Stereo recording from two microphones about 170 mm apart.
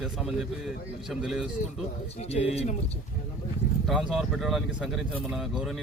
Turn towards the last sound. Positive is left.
turn(degrees=0)  # may be behind; listen again after turning